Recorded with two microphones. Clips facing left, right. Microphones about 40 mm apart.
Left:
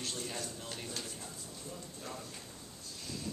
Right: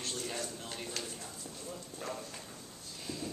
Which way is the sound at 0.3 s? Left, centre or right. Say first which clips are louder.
Right 2 dB; centre.